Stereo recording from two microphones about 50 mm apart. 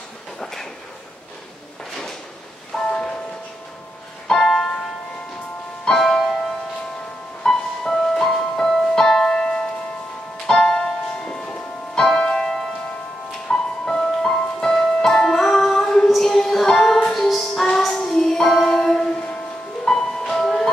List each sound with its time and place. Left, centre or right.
0.4 s a sound: centre
2.7 s music: centre
4.3 s music: centre
5.9 s music: centre
7.4 s music: centre
16.1 s a sound: centre
16.6 s music: centre
17.1 s music: centre
17.6 s child singing: centre
19.8 s music: centre